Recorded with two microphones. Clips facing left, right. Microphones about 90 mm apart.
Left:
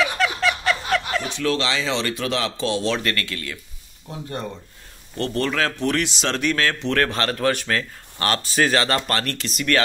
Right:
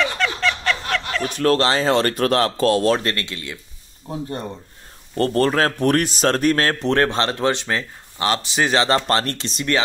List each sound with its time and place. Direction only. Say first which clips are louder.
0.0 s a sound: even; 5° left (ahead or behind)
1.3 s speech: right 7 dB; 45° right (ahead or behind)
3.0 s speech: even; 30° right (ahead or behind)
5.1 s a man's voice: right 6 dB; 40° right (ahead or behind); by 9.8 s 25° right (ahead or behind)